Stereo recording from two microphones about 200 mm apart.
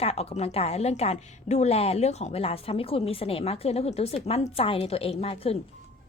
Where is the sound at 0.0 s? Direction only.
30° left (ahead or behind).